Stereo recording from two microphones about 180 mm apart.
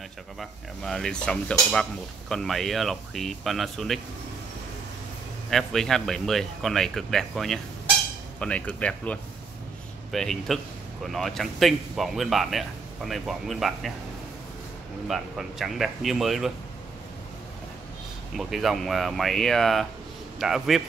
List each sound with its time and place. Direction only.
0.4 s cutlery: centre (ahead or behind)
5.5 s cutlery: centre (ahead or behind)
8.4 s speech: 5° left (ahead or behind)
10.1 s cutlery: centre (ahead or behind)
15.0 s cutlery: centre (ahead or behind)
18.3 s cutlery: centre (ahead or behind)